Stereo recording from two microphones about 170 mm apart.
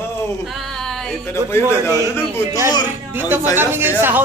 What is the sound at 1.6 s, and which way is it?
Speech, 15° right (ahead or behind).